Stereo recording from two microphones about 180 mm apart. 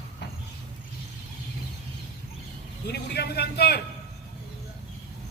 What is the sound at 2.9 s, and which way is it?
Speech, 65° left (ahead or behind).